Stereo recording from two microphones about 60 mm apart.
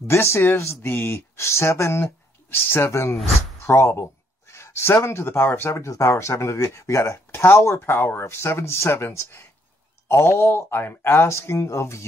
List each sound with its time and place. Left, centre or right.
0.0 s speech: left
2.9 s speech: left
5.7 s speech: left